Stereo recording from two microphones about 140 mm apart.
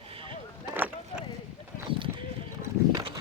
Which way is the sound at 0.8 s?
10° right (ahead or behind).